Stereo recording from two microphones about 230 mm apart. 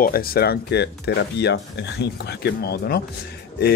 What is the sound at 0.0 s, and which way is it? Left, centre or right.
A man's voice, left.